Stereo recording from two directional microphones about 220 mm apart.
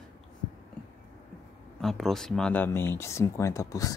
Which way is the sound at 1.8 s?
Centre (ahead or behind).